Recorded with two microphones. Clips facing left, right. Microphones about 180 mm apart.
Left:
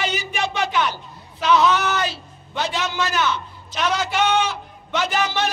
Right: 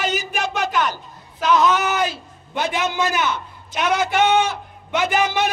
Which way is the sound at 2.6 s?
50° right (ahead or behind).